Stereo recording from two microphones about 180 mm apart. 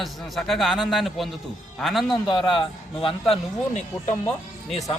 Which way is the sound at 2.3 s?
30° left (ahead or behind).